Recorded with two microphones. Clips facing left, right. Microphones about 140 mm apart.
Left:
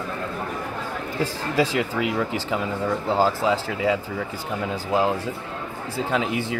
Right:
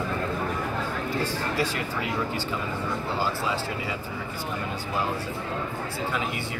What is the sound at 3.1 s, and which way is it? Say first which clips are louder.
Speech: left 9 dB; 90° left.